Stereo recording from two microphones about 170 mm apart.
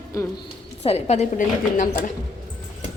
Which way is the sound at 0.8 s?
40° left (ahead or behind).